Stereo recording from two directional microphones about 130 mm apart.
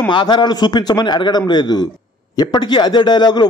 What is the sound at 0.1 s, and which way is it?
Speech, 35° left (ahead or behind).